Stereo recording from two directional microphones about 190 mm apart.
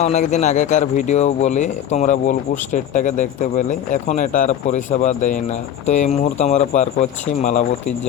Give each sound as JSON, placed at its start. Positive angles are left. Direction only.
{"t": 0.0, "sound": "speech", "side_deg": 35}